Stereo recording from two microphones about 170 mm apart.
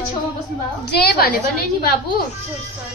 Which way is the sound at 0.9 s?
65° left (ahead or behind).